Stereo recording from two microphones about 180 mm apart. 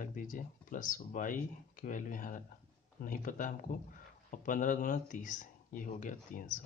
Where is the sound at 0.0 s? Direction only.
50° left (ahead or behind).